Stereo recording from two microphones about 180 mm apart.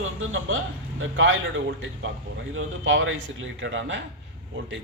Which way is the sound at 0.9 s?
90° right.